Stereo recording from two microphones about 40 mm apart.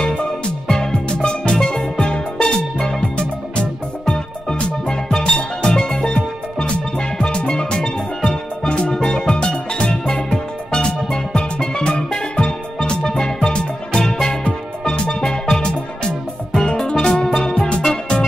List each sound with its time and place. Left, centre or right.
0.7 s music: left